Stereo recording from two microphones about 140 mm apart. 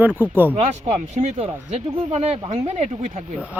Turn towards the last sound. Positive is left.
turn(degrees=-55)  # may be behind; listen again after turning